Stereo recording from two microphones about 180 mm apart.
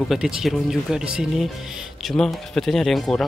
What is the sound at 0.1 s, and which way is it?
Speech, centre (ahead or behind).